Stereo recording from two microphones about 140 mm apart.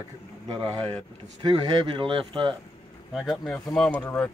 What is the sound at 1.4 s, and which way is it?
A man's voice, 30° right (ahead or behind).